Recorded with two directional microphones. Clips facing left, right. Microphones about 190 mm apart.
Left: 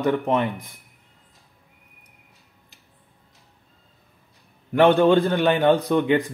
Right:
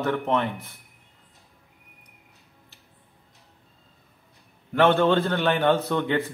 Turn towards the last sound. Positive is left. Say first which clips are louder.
# left 5 dB
turn(degrees=15)  # may be behind; listen again after turning